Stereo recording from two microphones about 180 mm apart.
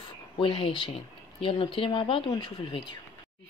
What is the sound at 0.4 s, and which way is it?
Speech, 30° left (ahead or behind).